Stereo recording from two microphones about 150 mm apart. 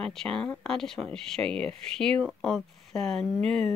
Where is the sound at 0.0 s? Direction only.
5° left (ahead or behind).